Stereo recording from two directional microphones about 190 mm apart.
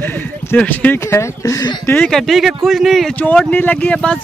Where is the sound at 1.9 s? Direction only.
5° left (ahead or behind).